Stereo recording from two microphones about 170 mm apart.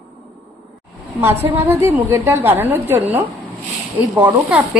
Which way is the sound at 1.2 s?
15° right (ahead or behind).